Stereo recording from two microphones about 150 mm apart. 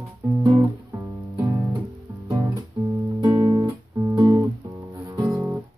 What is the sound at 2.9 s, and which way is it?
Guitar, 30° right (ahead or behind).